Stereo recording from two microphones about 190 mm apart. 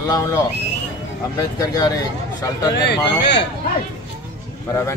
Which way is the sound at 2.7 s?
65° left (ahead or behind).